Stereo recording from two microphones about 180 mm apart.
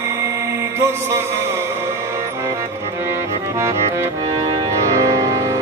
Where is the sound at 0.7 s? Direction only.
15° right (ahead or behind).